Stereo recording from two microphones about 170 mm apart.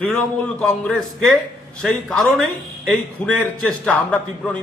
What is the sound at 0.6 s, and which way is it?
A man's voice, 5° left (ahead or behind).